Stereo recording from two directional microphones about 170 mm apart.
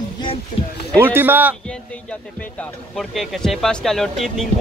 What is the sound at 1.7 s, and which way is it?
Speech, 5° left (ahead or behind).